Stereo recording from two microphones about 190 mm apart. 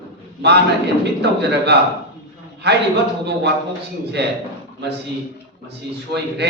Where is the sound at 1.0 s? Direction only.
60° right (ahead or behind).